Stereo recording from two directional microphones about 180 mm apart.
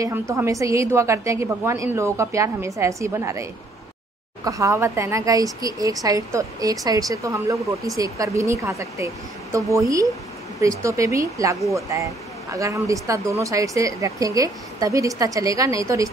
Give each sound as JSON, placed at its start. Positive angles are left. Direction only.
{"t": 0.0, "sound": "speech", "side_deg": -15}
{"t": 4.5, "sound": "a woman's voice", "side_deg": -15}